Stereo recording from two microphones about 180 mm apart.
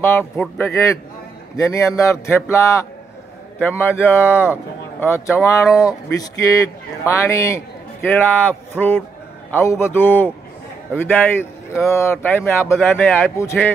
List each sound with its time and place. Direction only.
0.0 s a man's voice: 10° left (ahead or behind)